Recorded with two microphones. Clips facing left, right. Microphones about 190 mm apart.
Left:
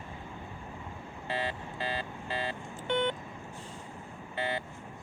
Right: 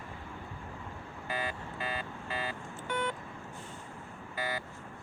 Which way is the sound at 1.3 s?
30° left (ahead or behind).